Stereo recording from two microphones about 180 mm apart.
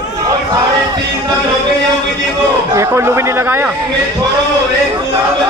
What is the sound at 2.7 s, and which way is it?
Speech, 15° right (ahead or behind).